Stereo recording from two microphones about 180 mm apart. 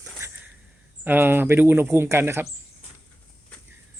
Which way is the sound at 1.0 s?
10° right (ahead or behind).